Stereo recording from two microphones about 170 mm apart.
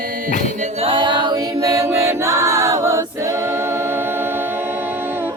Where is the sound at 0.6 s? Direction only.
35° right (ahead or behind); by 4.6 s 15° right (ahead or behind).